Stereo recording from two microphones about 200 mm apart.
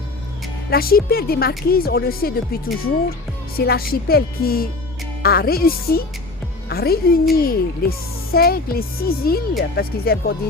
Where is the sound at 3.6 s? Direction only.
50° left (ahead or behind).